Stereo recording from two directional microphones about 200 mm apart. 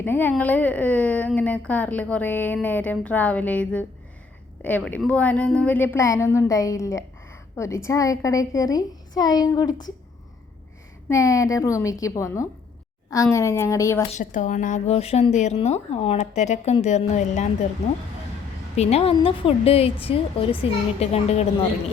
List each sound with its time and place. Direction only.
0.0 s speech: 10° left (ahead or behind)
11.1 s speech: 15° left (ahead or behind)
14.1 s speech: 40° left (ahead or behind)
18.8 s a woman's voice: 30° left (ahead or behind)